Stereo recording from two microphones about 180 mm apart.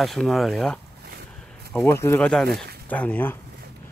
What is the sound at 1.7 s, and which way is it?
Speech, 10° left (ahead or behind).